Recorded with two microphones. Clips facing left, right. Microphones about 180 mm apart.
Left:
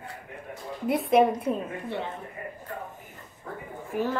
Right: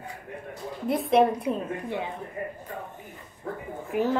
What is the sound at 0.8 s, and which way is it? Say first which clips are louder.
Speech: even; 5° left (ahead or behind).